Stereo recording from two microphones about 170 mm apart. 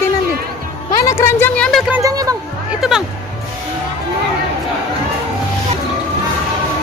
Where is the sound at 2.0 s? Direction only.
20° right (ahead or behind).